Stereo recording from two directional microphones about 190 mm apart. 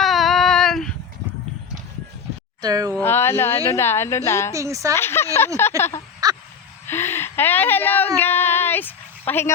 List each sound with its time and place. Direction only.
0.0 s child singing: centre (ahead or behind)
2.6 s a woman's voice: 20° right (ahead or behind)
3.0 s a woman's voice: 10° left (ahead or behind)
4.5 s a woman's voice: 15° right (ahead or behind)
4.9 s a woman's voice: 15° left (ahead or behind)
6.2 s crow: 20° right (ahead or behind)
6.8 s a sound: 10° left (ahead or behind)